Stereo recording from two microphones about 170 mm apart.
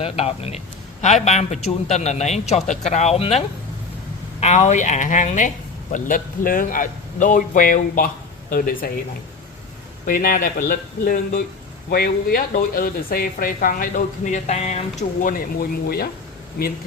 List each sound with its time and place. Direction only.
0.0 s a man's voice: 35° left (ahead or behind); by 8.9 s 55° left (ahead or behind)
10.1 s speech: 55° left (ahead or behind)